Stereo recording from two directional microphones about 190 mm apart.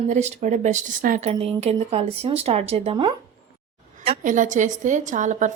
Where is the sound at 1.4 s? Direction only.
30° right (ahead or behind).